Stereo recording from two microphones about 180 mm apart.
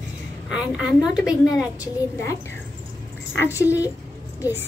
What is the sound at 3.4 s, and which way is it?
Speech, 10° right (ahead or behind).